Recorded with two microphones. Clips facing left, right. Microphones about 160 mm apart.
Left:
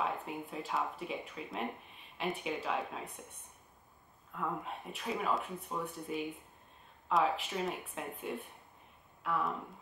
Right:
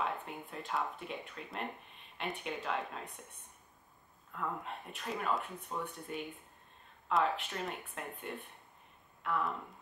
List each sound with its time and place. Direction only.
0.0 s speech: centre (ahead or behind)